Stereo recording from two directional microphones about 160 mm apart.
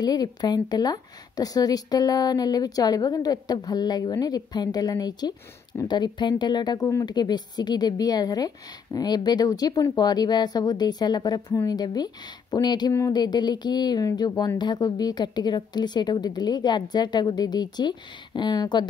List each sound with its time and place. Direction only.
0.0 s a woman's voice: 25° left (ahead or behind)